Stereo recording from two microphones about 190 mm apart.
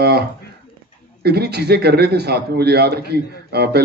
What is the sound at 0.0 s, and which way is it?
A man's voice, 55° right (ahead or behind).